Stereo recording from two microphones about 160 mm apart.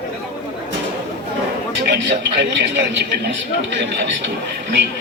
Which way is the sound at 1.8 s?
90° right.